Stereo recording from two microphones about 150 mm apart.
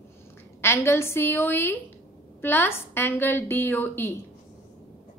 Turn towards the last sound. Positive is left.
turn(degrees=15)  # may be behind; listen again after turning